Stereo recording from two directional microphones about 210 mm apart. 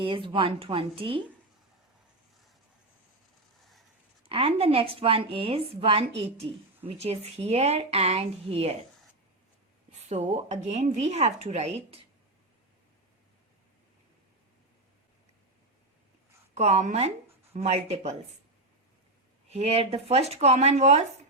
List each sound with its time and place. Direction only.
0.0 s a woman's voice: 25° right (ahead or behind)
4.2 s a woman's voice: 25° right (ahead or behind)
10.1 s speech: 30° right (ahead or behind)
16.6 s speech: 30° right (ahead or behind)
19.5 s speech: 30° right (ahead or behind)